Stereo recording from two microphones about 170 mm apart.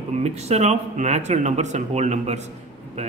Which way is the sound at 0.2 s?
40° right (ahead or behind).